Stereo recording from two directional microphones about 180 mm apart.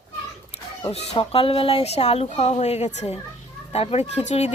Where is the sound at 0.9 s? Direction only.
35° left (ahead or behind).